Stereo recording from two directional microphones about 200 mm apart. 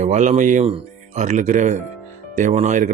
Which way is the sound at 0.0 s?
35° right (ahead or behind).